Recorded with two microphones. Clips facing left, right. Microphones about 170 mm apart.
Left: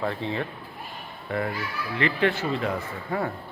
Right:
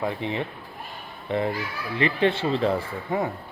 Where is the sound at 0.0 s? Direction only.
15° right (ahead or behind).